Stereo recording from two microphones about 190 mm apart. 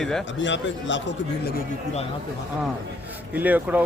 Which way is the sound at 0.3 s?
75° left (ahead or behind).